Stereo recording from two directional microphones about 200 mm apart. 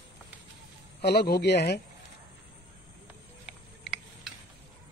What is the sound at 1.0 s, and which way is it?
Speech, 55° left (ahead or behind).